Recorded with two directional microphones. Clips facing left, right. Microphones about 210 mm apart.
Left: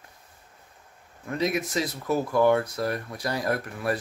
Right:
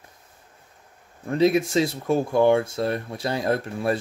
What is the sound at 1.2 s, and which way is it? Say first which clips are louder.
Speech: right 7 dB; 30° right (ahead or behind).